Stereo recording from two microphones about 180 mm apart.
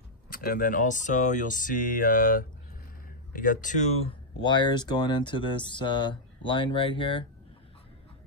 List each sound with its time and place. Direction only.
0.3 s speech: 55° left (ahead or behind); by 7.2 s 30° left (ahead or behind)